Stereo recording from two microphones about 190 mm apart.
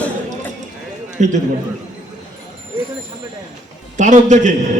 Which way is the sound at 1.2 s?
40° right (ahead or behind).